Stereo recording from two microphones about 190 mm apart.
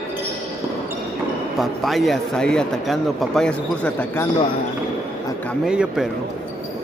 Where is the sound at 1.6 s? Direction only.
Centre (ahead or behind).